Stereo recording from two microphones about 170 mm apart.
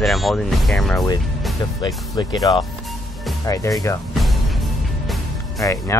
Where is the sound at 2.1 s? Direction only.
20° left (ahead or behind).